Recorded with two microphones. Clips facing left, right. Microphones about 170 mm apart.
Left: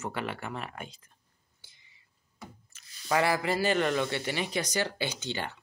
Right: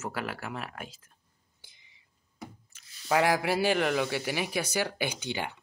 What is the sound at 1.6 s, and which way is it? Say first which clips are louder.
Whispering: right 2 dB; 15° right (ahead or behind).